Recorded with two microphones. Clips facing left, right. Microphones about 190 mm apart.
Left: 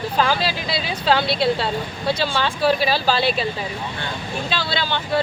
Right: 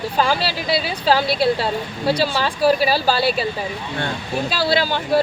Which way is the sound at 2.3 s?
35° right (ahead or behind).